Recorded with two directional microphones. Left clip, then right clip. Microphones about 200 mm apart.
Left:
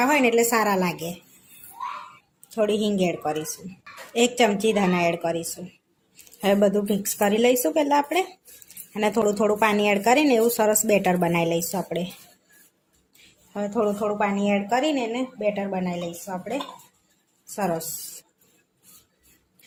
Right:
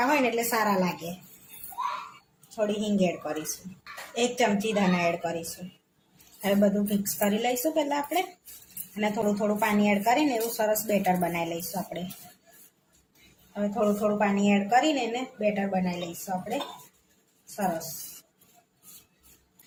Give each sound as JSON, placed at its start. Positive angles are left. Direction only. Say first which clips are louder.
{"t": 0.0, "sound": "speech", "louder": "left 5 dB", "side_deg": 40}
{"t": 2.6, "sound": "speech", "louder": "left 5 dB", "side_deg": 45}
{"t": 6.4, "sound": "a woman's voice", "louder": "left 5 dB", "side_deg": 55}
{"t": 13.5, "sound": "a woman's voice", "louder": "left 2 dB", "side_deg": 50}